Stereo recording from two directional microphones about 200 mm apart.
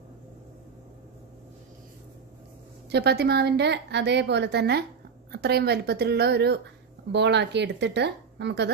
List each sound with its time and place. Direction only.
2.9 s a woman's voice: 55° right (ahead or behind)